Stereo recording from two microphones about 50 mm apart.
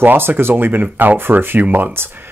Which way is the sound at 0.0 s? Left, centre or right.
Right.